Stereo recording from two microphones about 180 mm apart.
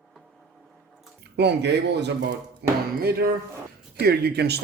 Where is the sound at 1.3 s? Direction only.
70° right (ahead or behind).